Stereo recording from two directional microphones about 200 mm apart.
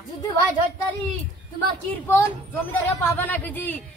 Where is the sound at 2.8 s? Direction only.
10° left (ahead or behind).